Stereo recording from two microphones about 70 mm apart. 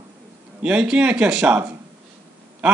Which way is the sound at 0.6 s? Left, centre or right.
Centre.